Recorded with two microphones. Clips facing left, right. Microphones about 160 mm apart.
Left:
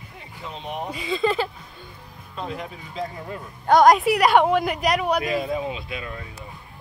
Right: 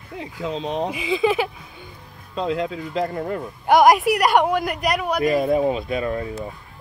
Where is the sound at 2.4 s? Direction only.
90° right; by 3.4 s 60° right (ahead or behind).